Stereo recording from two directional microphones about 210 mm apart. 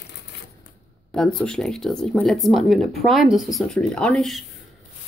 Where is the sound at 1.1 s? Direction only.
5° left (ahead or behind).